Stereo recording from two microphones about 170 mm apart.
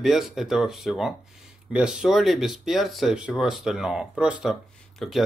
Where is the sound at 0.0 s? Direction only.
Centre (ahead or behind).